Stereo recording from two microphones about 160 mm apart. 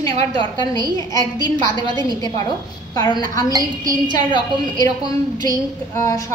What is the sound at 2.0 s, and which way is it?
A woman's voice, 25° left (ahead or behind).